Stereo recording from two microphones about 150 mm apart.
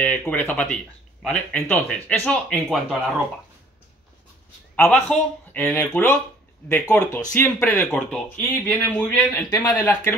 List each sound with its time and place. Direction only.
0.0 s speech: 10° left (ahead or behind)
4.7 s speech: 10° left (ahead or behind)
7.9 s speech: 5° left (ahead or behind)
9.5 s speech: 20° left (ahead or behind)